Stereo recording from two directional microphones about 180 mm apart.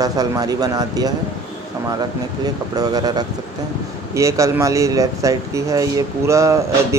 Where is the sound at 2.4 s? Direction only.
20° right (ahead or behind).